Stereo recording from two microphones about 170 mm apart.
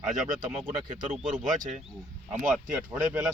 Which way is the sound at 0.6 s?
30° right (ahead or behind).